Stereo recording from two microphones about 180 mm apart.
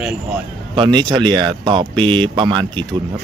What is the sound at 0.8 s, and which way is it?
Speech, 25° right (ahead or behind).